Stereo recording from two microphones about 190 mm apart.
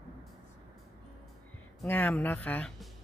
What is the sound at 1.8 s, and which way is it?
Speech, 10° left (ahead or behind).